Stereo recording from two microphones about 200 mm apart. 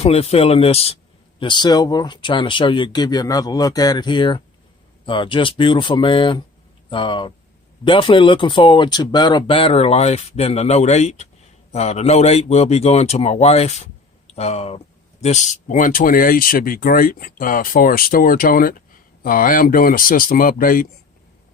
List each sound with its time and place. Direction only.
0.0 s a man's voice: 30° left (ahead or behind)